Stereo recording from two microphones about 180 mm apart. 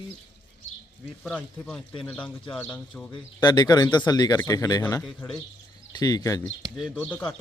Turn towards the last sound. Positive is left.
turn(degrees=10)  # may be behind; listen again after turning